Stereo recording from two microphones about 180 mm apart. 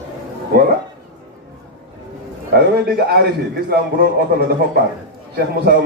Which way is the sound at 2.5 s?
60° right (ahead or behind).